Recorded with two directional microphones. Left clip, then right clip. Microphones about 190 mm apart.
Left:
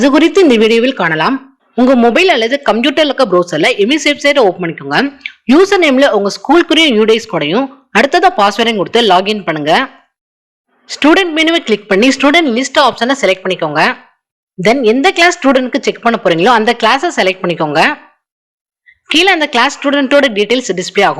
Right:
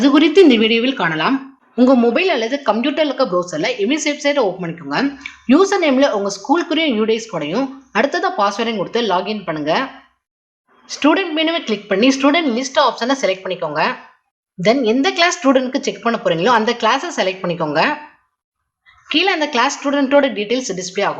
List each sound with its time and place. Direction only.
0.0 s speech: 40° left (ahead or behind)
19.0 s speech: 35° left (ahead or behind)